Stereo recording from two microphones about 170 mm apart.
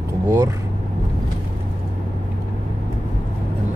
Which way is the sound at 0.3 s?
20° right (ahead or behind).